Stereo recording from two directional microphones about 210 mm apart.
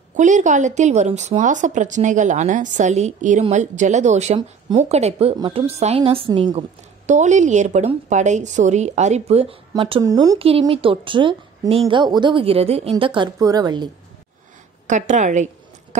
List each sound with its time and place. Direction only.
0.1 s a woman's voice: 35° right (ahead or behind)
4.4 s a woman's voice: 25° right (ahead or behind)
7.1 s a woman's voice: 35° right (ahead or behind); by 13.8 s 20° right (ahead or behind)
14.9 s a woman's voice: 35° right (ahead or behind)